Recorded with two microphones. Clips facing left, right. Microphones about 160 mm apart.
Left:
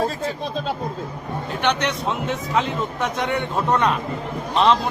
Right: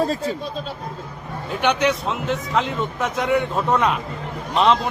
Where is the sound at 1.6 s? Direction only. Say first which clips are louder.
Right 3 dB; 5° right (ahead or behind).